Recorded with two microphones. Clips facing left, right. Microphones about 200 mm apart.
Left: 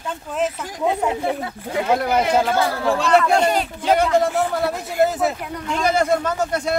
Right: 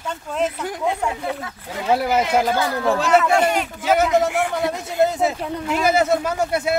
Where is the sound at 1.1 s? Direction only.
25° left (ahead or behind).